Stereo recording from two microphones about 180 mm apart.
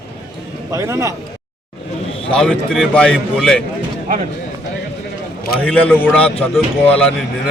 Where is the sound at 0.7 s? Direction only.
15° right (ahead or behind).